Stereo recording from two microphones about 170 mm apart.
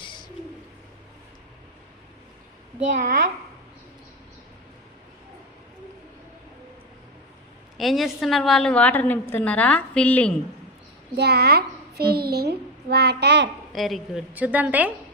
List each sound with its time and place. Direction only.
2.9 s a child's voice: 45° right (ahead or behind)
7.8 s a woman's voice: centre (ahead or behind)
11.2 s a child's voice: 70° right (ahead or behind); by 13.5 s 85° right
13.7 s a woman's voice: centre (ahead or behind)